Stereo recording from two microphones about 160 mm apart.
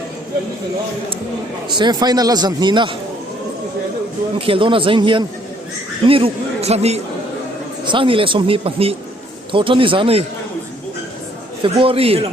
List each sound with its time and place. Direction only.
1.7 s a man's voice: 25° right (ahead or behind)
4.4 s speech: 35° right (ahead or behind)
11.6 s speech: 35° right (ahead or behind)